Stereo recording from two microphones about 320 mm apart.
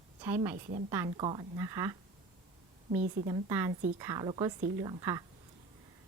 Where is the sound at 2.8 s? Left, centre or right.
Right.